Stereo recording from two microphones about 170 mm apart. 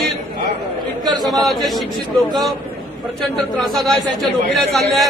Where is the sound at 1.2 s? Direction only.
Centre (ahead or behind).